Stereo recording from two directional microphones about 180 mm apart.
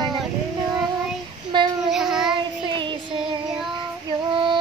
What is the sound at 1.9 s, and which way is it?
Child singing, centre (ahead or behind).